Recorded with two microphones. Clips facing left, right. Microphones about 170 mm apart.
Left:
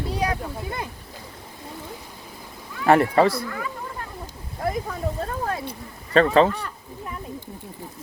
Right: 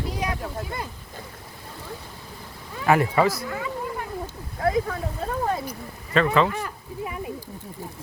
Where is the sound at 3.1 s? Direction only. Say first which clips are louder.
Left 3 dB; 30° left (ahead or behind).